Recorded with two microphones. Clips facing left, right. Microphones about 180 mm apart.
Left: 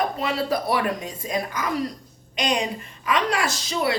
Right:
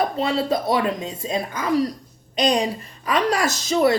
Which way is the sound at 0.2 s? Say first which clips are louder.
Right 3 dB; 25° right (ahead or behind).